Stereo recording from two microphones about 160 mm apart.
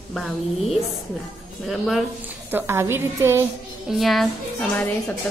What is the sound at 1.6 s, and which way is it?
Speech, centre (ahead or behind).